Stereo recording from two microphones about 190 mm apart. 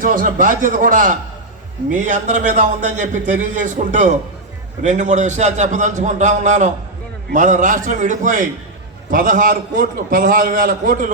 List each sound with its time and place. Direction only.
0.0 s a man's voice: 45° right (ahead or behind)